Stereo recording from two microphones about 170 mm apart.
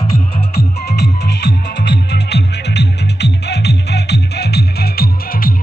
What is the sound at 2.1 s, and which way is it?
Music, 80° left.